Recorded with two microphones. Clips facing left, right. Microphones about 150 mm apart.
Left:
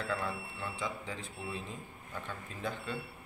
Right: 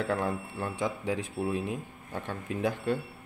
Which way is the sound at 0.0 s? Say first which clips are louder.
Right 7 dB; 60° right (ahead or behind).